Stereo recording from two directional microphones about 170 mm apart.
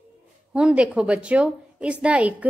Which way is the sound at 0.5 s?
5° right (ahead or behind).